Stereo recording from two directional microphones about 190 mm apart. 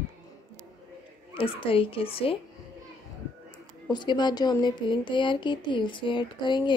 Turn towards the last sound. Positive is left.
turn(degrees=25)  # may be behind; listen again after turning